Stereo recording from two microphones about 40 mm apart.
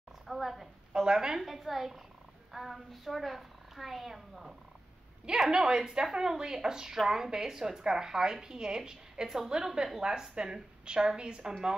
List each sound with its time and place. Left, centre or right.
0.3 s a woman's voice: centre
0.9 s a woman's voice: centre
1.4 s a woman's voice: centre
5.5 s a woman's voice: centre